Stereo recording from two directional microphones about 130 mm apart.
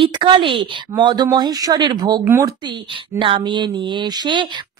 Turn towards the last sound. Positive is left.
turn(degrees=-35)  # may be behind; listen again after turning